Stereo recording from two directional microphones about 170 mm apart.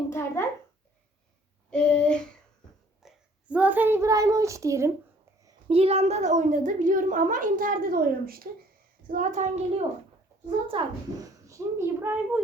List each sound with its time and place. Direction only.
0.1 s a sound: 15° left (ahead or behind)
1.7 s a sound: 5° left (ahead or behind)
3.0 s a child's voice: 5° right (ahead or behind)
5.6 s a woman's voice: 35° right (ahead or behind); by 8.4 s 60° right (ahead or behind)
9.0 s a woman's voice: 50° right (ahead or behind)
10.7 s a child's voice: 25° right (ahead or behind)